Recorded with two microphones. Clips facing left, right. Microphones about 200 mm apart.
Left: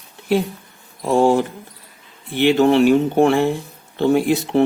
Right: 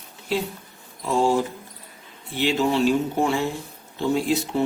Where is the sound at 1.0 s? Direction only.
55° left (ahead or behind).